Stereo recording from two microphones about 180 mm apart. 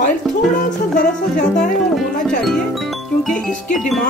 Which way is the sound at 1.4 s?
5° left (ahead or behind).